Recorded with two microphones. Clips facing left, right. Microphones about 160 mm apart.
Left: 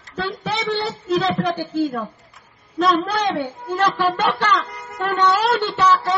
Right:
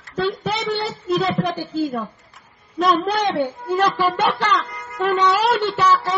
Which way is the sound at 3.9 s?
10° right (ahead or behind).